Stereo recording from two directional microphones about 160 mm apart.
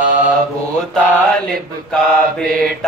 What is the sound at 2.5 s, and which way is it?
Mantra, 65° right (ahead or behind).